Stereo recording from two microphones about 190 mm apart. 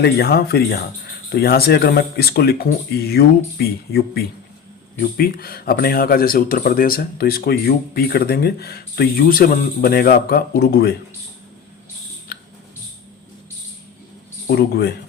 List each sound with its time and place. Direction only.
0.0 s speech: 55° left (ahead or behind)
14.5 s speech: 55° left (ahead or behind)